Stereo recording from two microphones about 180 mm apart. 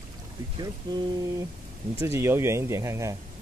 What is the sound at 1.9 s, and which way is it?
Speech, 15° right (ahead or behind).